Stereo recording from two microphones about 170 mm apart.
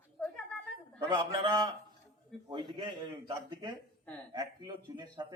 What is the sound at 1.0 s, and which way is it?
Speech, 30° right (ahead or behind).